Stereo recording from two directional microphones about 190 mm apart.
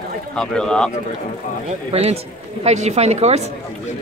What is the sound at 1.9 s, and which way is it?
Speech, 35° right (ahead or behind).